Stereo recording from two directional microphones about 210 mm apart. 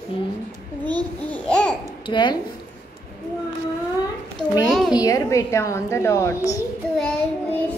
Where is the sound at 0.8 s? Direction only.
5° left (ahead or behind).